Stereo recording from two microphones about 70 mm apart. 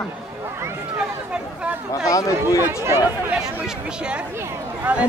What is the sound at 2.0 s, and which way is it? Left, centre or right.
Speech, left.